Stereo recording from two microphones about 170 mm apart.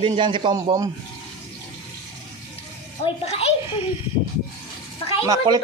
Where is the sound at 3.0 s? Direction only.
35° left (ahead or behind).